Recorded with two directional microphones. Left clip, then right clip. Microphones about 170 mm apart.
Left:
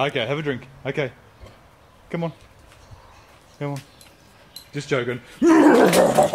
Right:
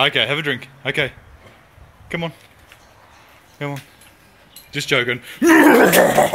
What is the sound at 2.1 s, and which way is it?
Speech, centre (ahead or behind).